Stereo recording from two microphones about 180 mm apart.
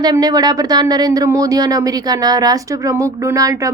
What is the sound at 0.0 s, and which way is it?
A woman's voice, 20° right (ahead or behind).